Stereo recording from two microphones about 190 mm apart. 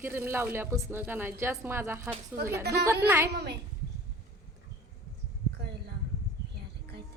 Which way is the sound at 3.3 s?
60° right (ahead or behind).